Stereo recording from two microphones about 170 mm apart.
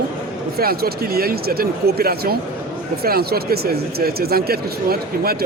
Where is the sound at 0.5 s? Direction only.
65° right (ahead or behind).